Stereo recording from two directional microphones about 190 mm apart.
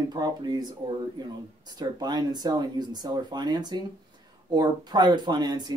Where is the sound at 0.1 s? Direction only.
20° right (ahead or behind).